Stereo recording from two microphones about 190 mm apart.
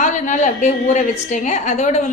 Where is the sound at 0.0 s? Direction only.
40° left (ahead or behind).